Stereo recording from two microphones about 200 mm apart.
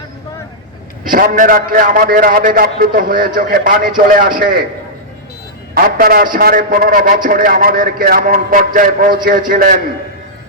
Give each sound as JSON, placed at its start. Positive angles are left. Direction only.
{"t": 1.1, "sound": "a man's voice", "side_deg": -45}
{"t": 5.7, "sound": "a man's voice", "side_deg": -45}